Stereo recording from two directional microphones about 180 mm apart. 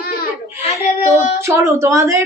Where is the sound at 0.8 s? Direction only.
35° left (ahead or behind).